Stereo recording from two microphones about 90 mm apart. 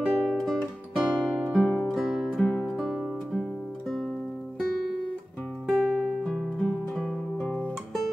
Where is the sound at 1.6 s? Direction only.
20° left (ahead or behind).